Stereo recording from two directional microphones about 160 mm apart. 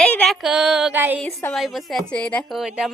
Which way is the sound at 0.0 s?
5° left (ahead or behind).